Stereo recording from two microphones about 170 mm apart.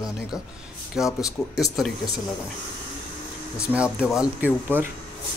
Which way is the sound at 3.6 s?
5° right (ahead or behind).